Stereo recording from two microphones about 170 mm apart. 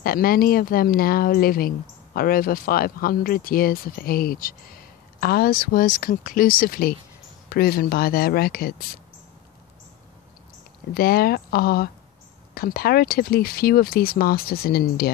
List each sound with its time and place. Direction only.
0.0 s speech: 60° left (ahead or behind)
10.9 s speech: 65° left (ahead or behind)